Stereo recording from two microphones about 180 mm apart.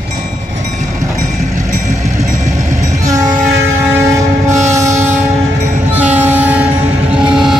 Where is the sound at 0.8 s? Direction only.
45° right (ahead or behind).